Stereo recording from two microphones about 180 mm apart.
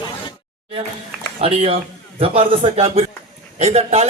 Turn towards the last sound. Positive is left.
turn(degrees=-35)  # may be behind; listen again after turning